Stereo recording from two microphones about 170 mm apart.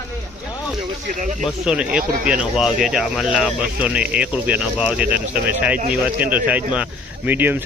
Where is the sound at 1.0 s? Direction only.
50° right (ahead or behind).